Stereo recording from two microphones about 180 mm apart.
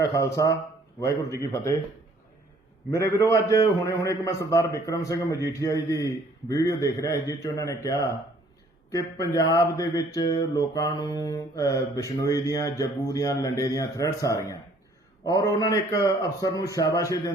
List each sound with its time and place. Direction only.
0.0 s speech: 20° left (ahead or behind)
1.4 s a man's voice: 15° left (ahead or behind)
2.9 s a man's voice: 15° left (ahead or behind)